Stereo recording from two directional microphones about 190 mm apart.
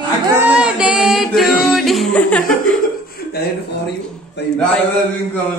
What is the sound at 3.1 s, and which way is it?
A man's voice, 55° left (ahead or behind).